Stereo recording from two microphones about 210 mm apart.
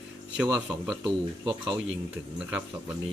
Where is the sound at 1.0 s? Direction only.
20° right (ahead or behind).